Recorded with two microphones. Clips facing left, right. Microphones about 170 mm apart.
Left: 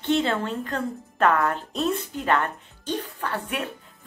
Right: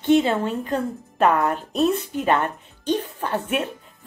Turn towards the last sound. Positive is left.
turn(degrees=-15)  # may be behind; listen again after turning